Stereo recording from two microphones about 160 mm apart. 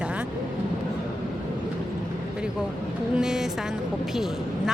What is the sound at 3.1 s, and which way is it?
Speech, 5° right (ahead or behind).